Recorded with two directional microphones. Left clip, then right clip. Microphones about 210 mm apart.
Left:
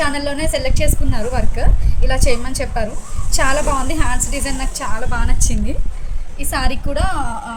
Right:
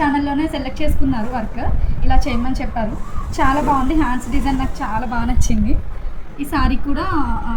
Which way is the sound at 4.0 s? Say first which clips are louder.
Right 2 dB; 60° left (ahead or behind).